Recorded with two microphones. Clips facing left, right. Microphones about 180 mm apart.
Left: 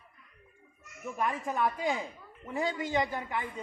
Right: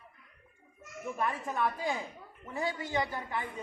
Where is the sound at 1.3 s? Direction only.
20° left (ahead or behind).